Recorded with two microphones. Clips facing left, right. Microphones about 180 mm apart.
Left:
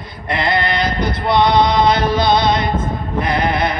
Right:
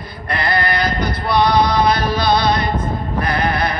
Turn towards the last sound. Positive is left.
turn(degrees=20)  # may be behind; listen again after turning